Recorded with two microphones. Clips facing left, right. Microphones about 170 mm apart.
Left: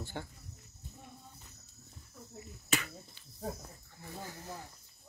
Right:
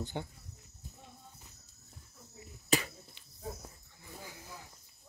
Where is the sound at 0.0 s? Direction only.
15° right (ahead or behind).